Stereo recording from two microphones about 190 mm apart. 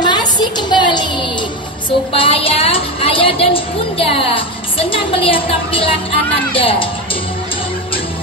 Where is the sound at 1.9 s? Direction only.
30° left (ahead or behind).